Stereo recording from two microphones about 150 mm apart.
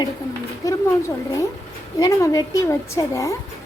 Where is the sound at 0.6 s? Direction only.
20° left (ahead or behind).